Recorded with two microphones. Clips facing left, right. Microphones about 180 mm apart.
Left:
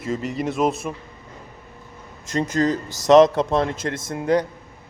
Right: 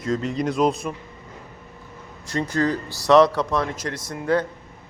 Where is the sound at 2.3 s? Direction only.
20° left (ahead or behind).